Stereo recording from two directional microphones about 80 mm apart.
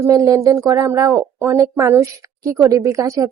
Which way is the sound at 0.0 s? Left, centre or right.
Right.